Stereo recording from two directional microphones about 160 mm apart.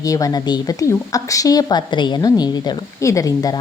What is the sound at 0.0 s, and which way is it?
Speech, 20° left (ahead or behind).